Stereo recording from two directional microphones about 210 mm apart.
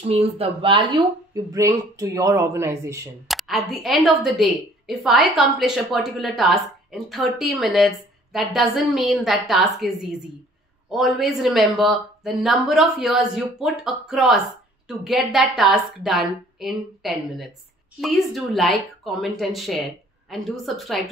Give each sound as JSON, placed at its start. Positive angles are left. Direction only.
{"t": 0.0, "sound": "speech", "side_deg": -30}
{"t": 3.3, "sound": "a woman's voice", "side_deg": 0}
{"t": 10.9, "sound": "a woman's voice", "side_deg": 0}